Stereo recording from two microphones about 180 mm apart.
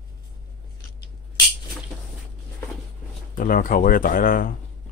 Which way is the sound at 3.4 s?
50° left (ahead or behind).